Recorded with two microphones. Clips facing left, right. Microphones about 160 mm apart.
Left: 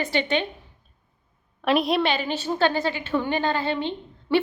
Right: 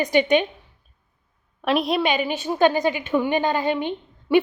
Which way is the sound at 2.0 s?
15° right (ahead or behind).